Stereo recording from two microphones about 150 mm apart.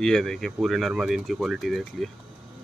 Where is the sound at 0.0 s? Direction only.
5° left (ahead or behind).